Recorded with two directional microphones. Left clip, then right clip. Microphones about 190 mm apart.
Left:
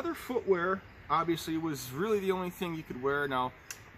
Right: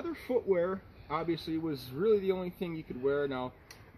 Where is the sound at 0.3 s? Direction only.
5° left (ahead or behind).